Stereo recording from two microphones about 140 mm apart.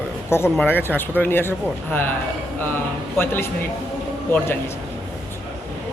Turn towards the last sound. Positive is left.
turn(degrees=15)  # may be behind; listen again after turning